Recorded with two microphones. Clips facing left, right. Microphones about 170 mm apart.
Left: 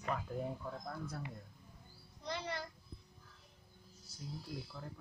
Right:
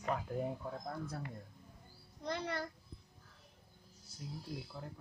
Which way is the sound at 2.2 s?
50° right (ahead or behind).